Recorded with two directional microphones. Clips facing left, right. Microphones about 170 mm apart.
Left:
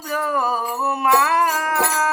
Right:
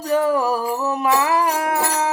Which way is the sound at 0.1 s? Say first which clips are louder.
Right 5 dB; 25° right (ahead or behind).